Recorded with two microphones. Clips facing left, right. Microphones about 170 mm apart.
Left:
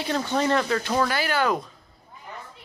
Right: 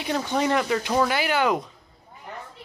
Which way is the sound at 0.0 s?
15° right (ahead or behind).